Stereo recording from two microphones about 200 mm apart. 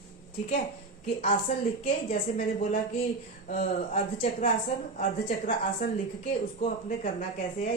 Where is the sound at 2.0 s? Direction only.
35° left (ahead or behind).